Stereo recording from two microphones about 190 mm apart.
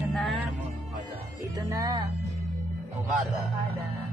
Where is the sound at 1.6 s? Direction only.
15° right (ahead or behind).